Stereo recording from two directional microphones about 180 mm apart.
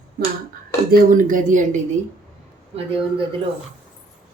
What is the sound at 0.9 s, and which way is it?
Speech, 45° right (ahead or behind).